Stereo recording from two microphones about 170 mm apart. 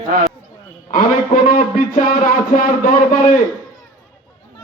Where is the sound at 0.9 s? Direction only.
55° left (ahead or behind).